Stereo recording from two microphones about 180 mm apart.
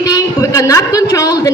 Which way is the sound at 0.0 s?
20° left (ahead or behind).